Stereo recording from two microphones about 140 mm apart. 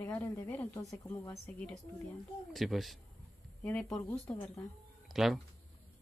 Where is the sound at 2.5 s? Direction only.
Centre (ahead or behind).